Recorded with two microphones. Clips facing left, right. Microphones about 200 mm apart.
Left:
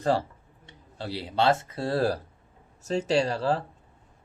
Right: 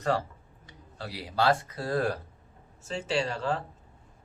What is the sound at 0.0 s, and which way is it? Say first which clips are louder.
Speech: left 3 dB; 30° left (ahead or behind).